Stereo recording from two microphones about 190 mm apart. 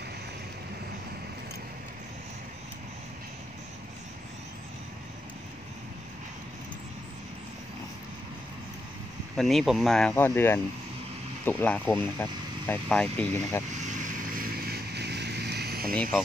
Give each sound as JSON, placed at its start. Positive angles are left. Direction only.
{"t": 9.4, "sound": "speech", "side_deg": 0}
{"t": 13.7, "sound": "vehicle", "side_deg": -40}
{"t": 15.9, "sound": "speech", "side_deg": 5}